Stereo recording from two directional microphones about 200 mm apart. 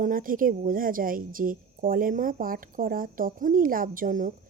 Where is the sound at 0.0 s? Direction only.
45° right (ahead or behind).